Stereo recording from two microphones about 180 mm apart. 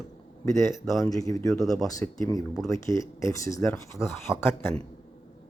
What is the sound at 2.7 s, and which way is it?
Speech, 15° left (ahead or behind).